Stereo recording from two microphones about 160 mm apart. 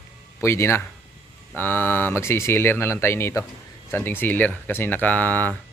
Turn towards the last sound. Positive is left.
turn(degrees=10)  # may be behind; listen again after turning